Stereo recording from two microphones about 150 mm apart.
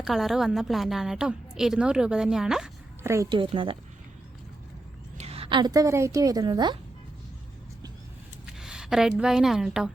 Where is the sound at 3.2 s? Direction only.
35° right (ahead or behind).